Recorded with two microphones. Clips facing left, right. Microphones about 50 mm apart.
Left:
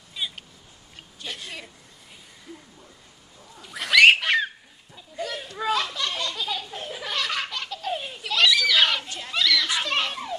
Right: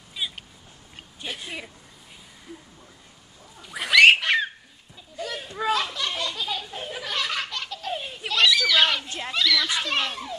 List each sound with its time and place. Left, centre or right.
0.1 s a sound: centre
3.6 s a sound: centre
5.2 s children playing: centre
7.0 s laughter: centre
8.3 s screaming: centre
9.3 s children playing: centre